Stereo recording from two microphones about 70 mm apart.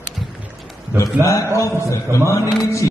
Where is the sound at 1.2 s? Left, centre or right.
Left.